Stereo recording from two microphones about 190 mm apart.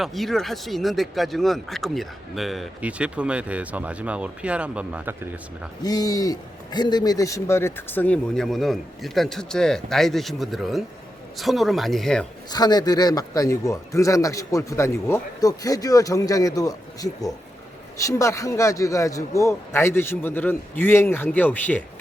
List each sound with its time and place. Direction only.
0.0 s speech: centre (ahead or behind)
5.8 s speech: 20° left (ahead or behind); by 12.2 s centre (ahead or behind)
12.5 s a man's voice: 20° left (ahead or behind)